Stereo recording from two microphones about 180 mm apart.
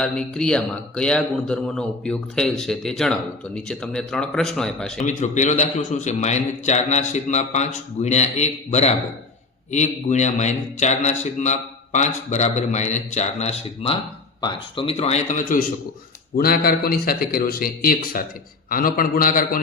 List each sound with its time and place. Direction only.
0.0 s a man's voice: 5° left (ahead or behind)
5.0 s a man's voice: 40° left (ahead or behind)